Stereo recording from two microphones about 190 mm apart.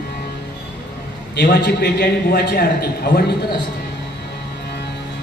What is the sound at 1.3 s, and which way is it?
A man's voice, 65° left (ahead or behind).